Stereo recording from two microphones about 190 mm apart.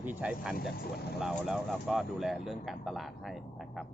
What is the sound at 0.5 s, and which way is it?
Speech, 55° left (ahead or behind).